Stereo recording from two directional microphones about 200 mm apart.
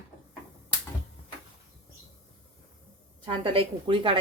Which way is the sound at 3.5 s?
25° right (ahead or behind).